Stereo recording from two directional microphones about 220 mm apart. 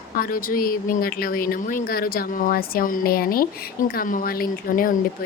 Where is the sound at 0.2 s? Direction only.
40° left (ahead or behind).